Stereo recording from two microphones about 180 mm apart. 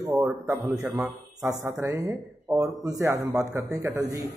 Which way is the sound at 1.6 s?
15° right (ahead or behind).